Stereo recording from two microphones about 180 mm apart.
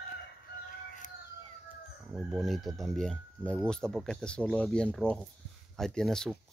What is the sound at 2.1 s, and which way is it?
Speech, 5° right (ahead or behind).